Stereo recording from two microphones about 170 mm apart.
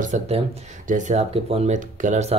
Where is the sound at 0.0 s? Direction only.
45° right (ahead or behind).